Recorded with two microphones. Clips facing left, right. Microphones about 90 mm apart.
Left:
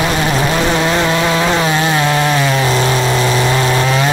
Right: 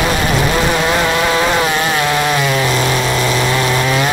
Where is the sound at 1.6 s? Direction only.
25° left (ahead or behind).